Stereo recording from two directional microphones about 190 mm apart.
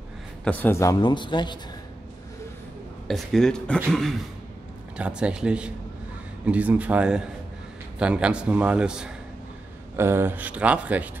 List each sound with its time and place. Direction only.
0.5 s a man's voice: 10° left (ahead or behind)
3.1 s a man's voice: centre (ahead or behind)
4.9 s a man's voice: 5° right (ahead or behind)